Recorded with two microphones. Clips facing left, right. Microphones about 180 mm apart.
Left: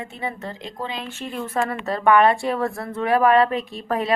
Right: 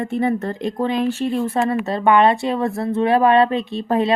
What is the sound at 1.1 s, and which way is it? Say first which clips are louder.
Speech: right 10 dB; 35° right (ahead or behind).